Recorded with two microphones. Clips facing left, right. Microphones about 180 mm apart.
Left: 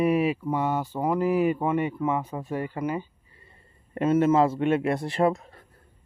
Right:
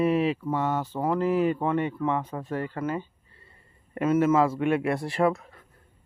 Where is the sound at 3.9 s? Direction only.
25° left (ahead or behind).